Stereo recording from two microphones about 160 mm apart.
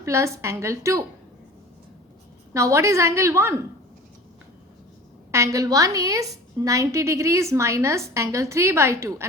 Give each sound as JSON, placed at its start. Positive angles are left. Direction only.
{"t": 0.0, "sound": "a woman's voice", "side_deg": -20}
{"t": 2.5, "sound": "a woman's voice", "side_deg": -20}
{"t": 5.3, "sound": "a woman's voice", "side_deg": -20}